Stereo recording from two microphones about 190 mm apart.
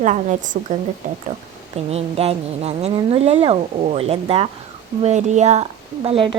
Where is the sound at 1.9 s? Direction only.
35° right (ahead or behind).